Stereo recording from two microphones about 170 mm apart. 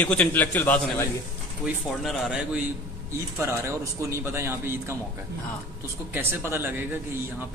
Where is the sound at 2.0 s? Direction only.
5° right (ahead or behind).